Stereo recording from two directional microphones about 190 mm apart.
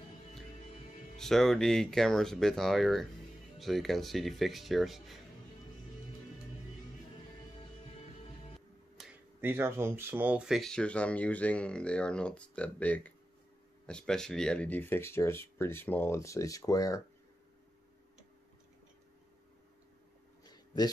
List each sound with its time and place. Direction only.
1.1 s speech: centre (ahead or behind)
8.5 s music: centre (ahead or behind)
9.4 s speech: 15° right (ahead or behind); by 17.0 s 15° left (ahead or behind)
20.4 s a sound: 20° left (ahead or behind)